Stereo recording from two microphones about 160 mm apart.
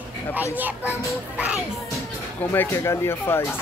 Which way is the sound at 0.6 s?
10° right (ahead or behind).